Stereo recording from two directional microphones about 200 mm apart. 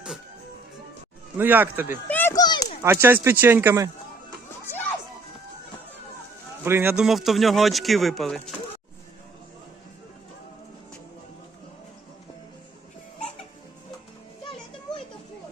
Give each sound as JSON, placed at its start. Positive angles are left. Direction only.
{"t": 1.4, "sound": "speech", "side_deg": -10}
{"t": 2.0, "sound": "a sound", "side_deg": 10}
{"t": 2.8, "sound": "speech", "side_deg": -10}
{"t": 6.7, "sound": "a man's voice", "side_deg": -10}